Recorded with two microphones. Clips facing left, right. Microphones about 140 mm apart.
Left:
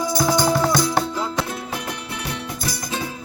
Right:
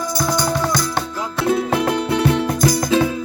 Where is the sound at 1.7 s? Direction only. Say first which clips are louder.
Right 12 dB; 90° right.